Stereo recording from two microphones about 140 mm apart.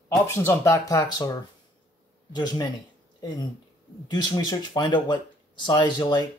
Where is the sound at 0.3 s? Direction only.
20° left (ahead or behind).